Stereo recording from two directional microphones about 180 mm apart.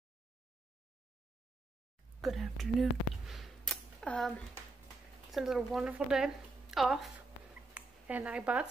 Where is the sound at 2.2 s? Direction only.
Centre (ahead or behind).